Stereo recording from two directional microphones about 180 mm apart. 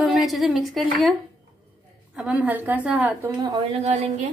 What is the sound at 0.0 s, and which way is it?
A woman's voice, centre (ahead or behind).